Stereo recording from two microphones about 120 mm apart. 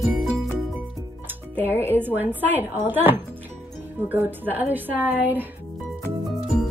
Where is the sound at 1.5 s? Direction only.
20° left (ahead or behind).